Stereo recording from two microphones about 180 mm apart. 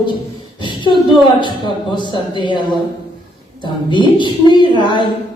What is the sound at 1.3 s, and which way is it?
Speech, 25° left (ahead or behind).